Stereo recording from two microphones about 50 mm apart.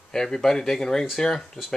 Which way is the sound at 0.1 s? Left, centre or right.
Centre.